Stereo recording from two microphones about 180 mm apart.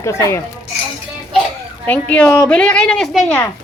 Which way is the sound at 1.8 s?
5° left (ahead or behind).